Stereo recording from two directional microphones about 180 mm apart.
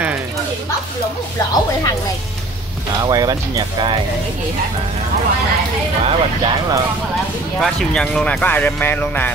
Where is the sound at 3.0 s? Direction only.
20° right (ahead or behind).